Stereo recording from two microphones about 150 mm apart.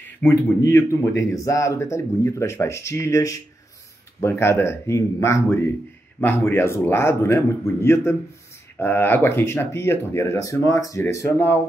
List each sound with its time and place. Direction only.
0.2 s speech: 20° left (ahead or behind)